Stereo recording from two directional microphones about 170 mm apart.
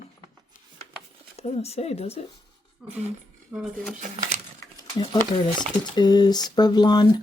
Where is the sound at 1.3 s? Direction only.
35° left (ahead or behind).